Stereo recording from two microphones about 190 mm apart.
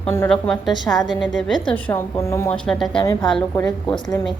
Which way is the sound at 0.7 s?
20° left (ahead or behind).